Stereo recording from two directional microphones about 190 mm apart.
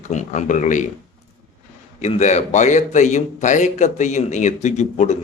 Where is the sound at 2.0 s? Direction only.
35° left (ahead or behind).